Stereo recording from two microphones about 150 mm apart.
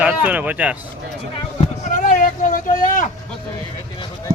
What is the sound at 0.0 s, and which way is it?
Speech, 10° right (ahead or behind).